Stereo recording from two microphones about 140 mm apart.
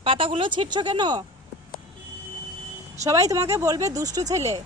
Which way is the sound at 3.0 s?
25° right (ahead or behind).